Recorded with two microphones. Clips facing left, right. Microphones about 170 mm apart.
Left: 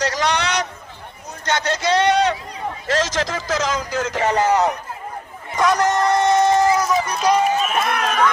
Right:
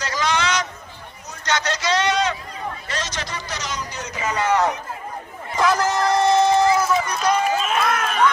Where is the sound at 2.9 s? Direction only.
90° left.